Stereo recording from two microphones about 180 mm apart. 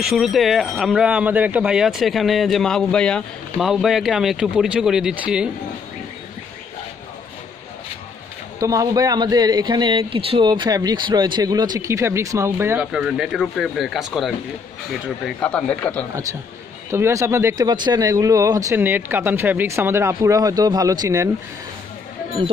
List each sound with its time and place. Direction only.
0.0 s speech: centre (ahead or behind)
8.5 s a man's voice: 20° right (ahead or behind); by 16.1 s 10° left (ahead or behind)
16.9 s speech: 15° right (ahead or behind)